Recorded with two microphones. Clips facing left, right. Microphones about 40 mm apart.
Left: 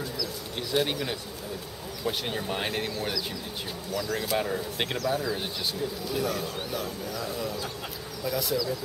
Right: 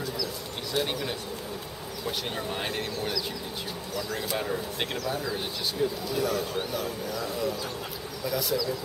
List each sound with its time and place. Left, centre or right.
0.7 s speech: centre
2.0 s speech: centre
5.8 s speech: centre
6.1 s speech: centre